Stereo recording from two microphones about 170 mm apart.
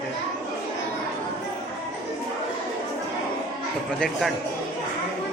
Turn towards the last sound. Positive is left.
turn(degrees=0)  # may be behind; listen again after turning